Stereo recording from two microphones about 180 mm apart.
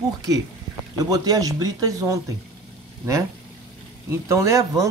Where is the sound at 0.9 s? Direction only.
20° right (ahead or behind).